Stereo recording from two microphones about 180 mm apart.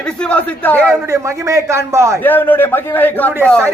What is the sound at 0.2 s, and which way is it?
Speech, 5° left (ahead or behind).